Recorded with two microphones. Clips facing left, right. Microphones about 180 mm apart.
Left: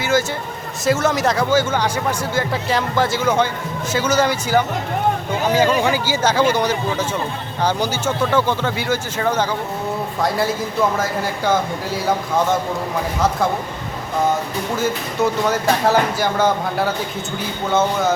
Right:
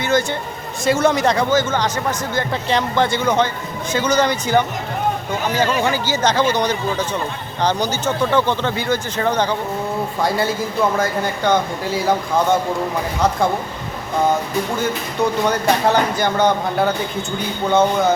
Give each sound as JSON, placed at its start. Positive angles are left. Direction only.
{"t": 0.0, "sound": "speech", "side_deg": 5}
{"t": 14.8, "sound": "speech", "side_deg": 5}